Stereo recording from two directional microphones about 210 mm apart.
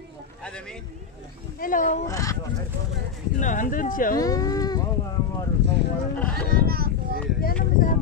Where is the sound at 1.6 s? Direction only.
40° left (ahead or behind).